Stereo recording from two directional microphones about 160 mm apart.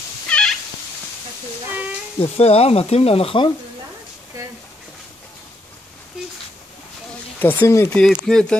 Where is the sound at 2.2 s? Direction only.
40° left (ahead or behind).